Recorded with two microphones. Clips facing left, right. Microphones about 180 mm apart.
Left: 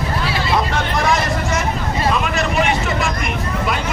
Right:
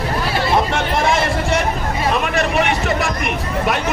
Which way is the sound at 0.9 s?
25° right (ahead or behind).